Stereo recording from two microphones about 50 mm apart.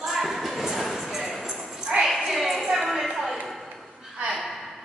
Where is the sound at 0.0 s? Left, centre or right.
Centre.